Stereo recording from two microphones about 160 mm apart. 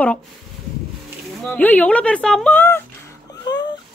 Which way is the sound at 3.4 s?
25° left (ahead or behind).